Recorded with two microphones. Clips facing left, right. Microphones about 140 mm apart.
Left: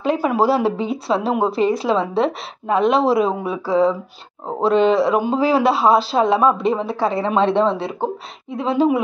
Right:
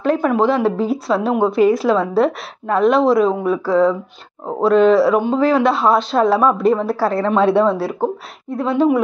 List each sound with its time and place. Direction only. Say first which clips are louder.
0.0 s speech: right 2 dB; 5° left (ahead or behind)
8.6 s speech: right 1 dB; 25° left (ahead or behind)